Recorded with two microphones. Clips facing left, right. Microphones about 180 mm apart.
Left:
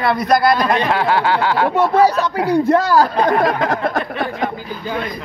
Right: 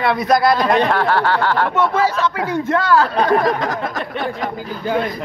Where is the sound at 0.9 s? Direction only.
10° left (ahead or behind).